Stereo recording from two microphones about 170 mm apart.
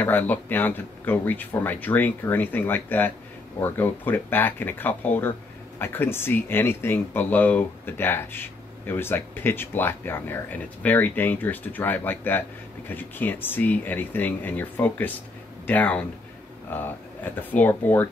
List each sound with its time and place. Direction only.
0.0 s speech: 10° left (ahead or behind)